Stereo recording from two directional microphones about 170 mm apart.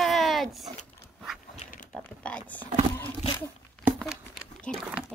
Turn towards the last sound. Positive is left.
turn(degrees=0)  # may be behind; listen again after turning